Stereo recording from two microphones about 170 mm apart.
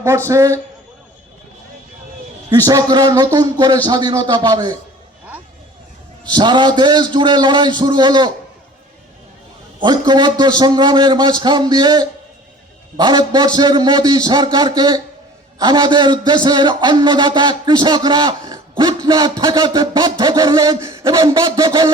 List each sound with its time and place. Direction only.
0.3 s a man's voice: 20° right (ahead or behind)
2.6 s a man's voice: 20° right (ahead or behind)
6.3 s a man's voice: 25° right (ahead or behind)
9.8 s a man's voice: 25° right (ahead or behind)